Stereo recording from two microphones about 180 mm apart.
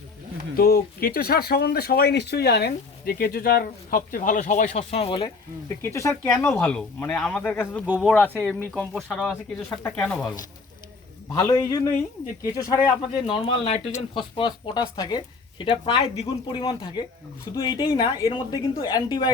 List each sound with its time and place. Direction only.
0.5 s speech: 60° left (ahead or behind); by 5.3 s 30° left (ahead or behind)
5.6 s speech: 15° left (ahead or behind)
6.3 s speech: 5° left (ahead or behind)
11.3 s speech: 20° left (ahead or behind)
13.2 s speech: 30° left (ahead or behind)